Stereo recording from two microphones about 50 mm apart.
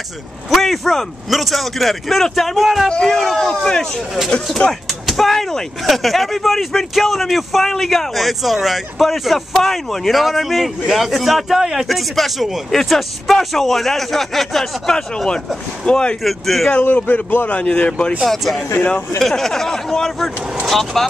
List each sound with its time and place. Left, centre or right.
0.5 s speech: centre
2.9 s speech: centre
3.2 s speech: centre
5.0 s speech: centre
12.2 s speech: centre
16.3 s speech: centre
16.7 s speech: left
17.5 s speech: left
18.2 s speech: centre